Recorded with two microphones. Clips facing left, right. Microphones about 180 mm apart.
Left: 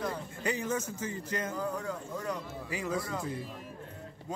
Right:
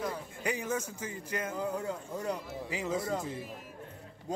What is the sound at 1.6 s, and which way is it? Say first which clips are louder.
Speech: right 1 dB; 25° right (ahead or behind).